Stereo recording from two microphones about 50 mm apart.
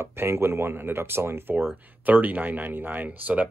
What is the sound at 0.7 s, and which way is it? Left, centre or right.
Speech, right.